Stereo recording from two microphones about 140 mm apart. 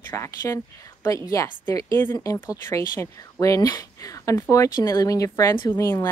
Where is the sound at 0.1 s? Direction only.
20° left (ahead or behind).